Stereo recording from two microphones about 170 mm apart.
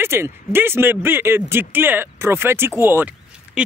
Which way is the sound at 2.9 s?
10° right (ahead or behind).